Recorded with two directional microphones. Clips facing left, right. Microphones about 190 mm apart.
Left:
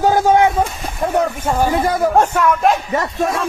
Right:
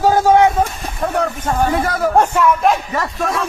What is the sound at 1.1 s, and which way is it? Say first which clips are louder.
Speech: left 2 dB; 10° left (ahead or behind).